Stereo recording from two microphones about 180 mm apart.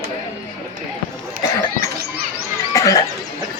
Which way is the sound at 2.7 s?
20° left (ahead or behind).